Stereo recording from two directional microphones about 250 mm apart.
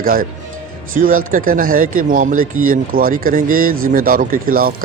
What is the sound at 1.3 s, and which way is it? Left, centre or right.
Speech, right.